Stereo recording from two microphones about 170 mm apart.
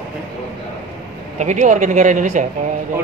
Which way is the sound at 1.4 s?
45° right (ahead or behind).